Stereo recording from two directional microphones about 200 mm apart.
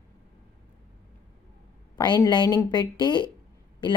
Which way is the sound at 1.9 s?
20° left (ahead or behind).